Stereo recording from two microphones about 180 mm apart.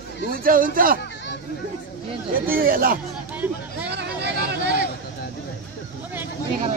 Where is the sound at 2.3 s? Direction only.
55° right (ahead or behind).